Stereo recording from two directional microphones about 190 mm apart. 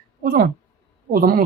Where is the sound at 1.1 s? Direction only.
50° right (ahead or behind).